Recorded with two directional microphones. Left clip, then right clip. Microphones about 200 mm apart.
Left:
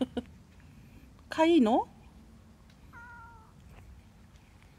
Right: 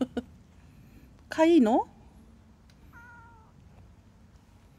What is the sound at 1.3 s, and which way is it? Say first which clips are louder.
Speech: right 3 dB; 10° right (ahead or behind).